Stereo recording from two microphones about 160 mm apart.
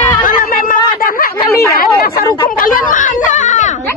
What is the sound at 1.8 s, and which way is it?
Speech, 65° left (ahead or behind).